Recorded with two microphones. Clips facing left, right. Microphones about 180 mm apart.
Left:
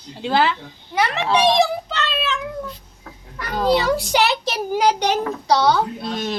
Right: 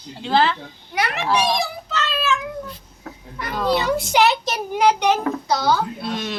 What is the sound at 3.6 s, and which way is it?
A child's voice, 35° left (ahead or behind).